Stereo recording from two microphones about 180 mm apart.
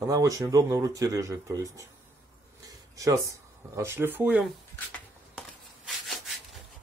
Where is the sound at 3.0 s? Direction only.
20° right (ahead or behind).